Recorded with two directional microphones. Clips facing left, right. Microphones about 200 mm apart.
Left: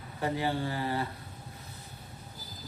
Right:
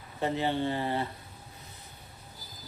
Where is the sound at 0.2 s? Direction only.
25° right (ahead or behind).